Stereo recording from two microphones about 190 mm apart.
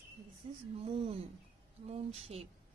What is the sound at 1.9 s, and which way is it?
Speech, 35° right (ahead or behind).